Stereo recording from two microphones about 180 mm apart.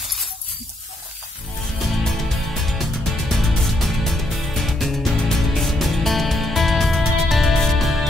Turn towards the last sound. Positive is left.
turn(degrees=0)  # may be behind; listen again after turning